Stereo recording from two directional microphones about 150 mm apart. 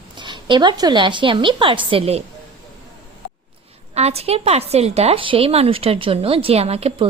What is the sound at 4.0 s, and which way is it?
A woman's voice, 45° right (ahead or behind).